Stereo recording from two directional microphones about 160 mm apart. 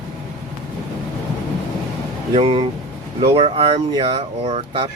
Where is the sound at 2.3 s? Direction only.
40° right (ahead or behind).